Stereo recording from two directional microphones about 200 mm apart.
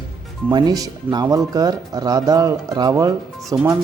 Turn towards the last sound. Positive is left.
turn(degrees=-10)  # may be behind; listen again after turning